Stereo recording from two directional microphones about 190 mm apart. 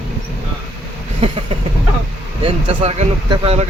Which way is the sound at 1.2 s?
30° right (ahead or behind).